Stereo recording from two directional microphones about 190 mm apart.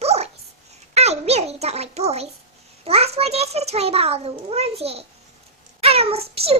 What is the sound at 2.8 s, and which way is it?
A child's voice, 30° right (ahead or behind).